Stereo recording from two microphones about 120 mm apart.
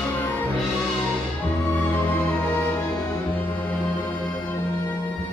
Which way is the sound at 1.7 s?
15° left (ahead or behind).